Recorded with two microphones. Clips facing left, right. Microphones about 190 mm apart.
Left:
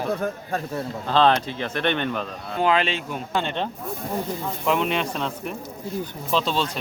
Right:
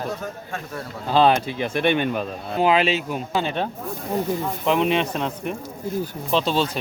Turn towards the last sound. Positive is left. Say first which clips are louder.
# right 2 dB
turn(degrees=-5)  # may be behind; listen again after turning